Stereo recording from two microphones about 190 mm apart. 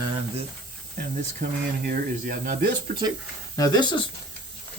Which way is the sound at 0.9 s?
45° right (ahead or behind).